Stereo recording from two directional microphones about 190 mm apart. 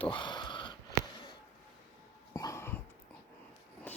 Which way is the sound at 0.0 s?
25° left (ahead or behind).